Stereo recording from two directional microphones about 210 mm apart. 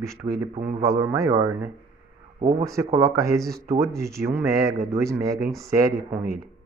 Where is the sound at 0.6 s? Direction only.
40° right (ahead or behind).